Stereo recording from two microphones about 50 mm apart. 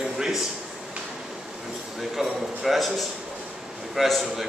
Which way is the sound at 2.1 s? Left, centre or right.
Centre.